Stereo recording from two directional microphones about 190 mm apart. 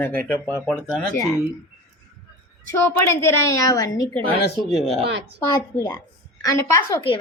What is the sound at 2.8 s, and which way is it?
A child's voice, 10° left (ahead or behind).